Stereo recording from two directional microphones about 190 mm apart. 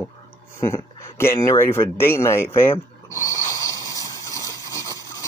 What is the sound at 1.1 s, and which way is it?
Speech, 15° left (ahead or behind).